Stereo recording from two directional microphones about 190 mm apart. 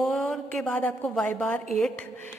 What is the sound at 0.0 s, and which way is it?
A woman's voice, centre (ahead or behind).